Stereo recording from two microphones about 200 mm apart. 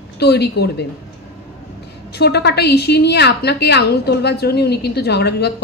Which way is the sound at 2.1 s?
55° left (ahead or behind).